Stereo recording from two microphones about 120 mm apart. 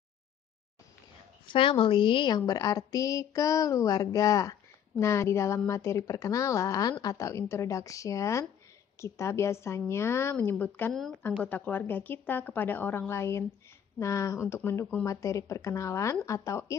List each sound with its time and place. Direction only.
1.5 s a woman's voice: 45° left (ahead or behind); by 16.7 s 25° left (ahead or behind)